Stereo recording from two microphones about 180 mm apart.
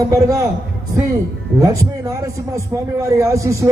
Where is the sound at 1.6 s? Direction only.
20° right (ahead or behind).